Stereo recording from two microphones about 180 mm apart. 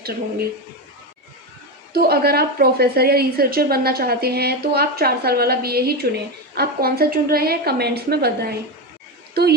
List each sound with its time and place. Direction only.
1.9 s a woman's voice: 60° right (ahead or behind)